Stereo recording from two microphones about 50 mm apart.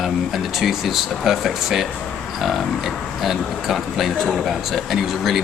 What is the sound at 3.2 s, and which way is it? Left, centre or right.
Speech, centre.